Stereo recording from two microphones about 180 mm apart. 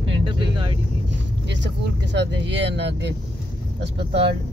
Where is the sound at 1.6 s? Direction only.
75° right (ahead or behind).